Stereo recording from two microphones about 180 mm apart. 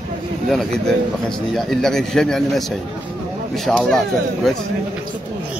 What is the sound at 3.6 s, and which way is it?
Speech, 5° left (ahead or behind).